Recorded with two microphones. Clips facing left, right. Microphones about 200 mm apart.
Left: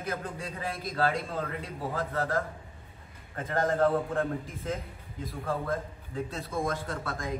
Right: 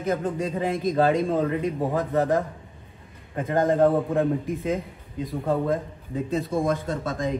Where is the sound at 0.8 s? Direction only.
15° right (ahead or behind).